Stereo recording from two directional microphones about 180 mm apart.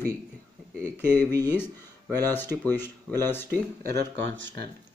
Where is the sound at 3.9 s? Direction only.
90° right.